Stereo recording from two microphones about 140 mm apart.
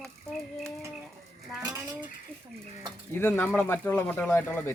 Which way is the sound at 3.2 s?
15° left (ahead or behind).